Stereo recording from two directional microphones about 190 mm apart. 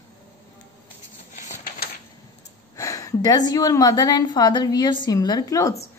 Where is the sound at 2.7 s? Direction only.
15° left (ahead or behind).